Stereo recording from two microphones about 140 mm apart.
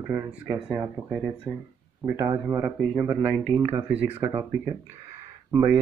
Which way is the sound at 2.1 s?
20° right (ahead or behind).